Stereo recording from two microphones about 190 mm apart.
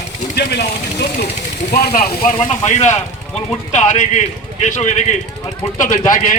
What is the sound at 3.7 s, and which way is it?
Speech, 35° left (ahead or behind).